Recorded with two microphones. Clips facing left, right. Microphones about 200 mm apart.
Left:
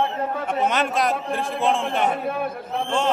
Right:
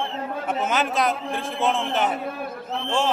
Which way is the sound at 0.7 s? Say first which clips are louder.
Right 2 dB; centre (ahead or behind).